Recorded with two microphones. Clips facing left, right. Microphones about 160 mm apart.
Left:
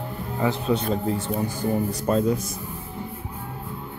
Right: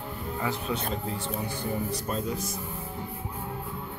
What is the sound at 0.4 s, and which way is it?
A man's voice, 30° left (ahead or behind).